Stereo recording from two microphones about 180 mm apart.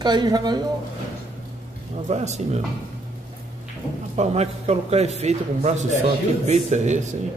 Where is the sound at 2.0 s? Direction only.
40° right (ahead or behind).